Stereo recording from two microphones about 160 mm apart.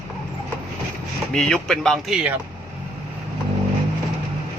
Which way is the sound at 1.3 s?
5° left (ahead or behind).